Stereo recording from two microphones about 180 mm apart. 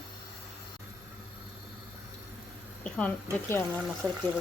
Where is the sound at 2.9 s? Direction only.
5° left (ahead or behind).